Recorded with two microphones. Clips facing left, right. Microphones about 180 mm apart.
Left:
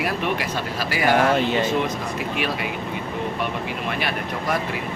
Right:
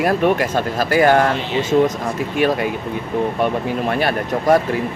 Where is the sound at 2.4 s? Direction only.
45° right (ahead or behind).